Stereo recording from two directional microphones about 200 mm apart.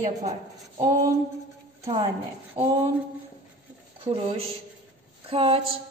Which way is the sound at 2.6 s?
25° right (ahead or behind).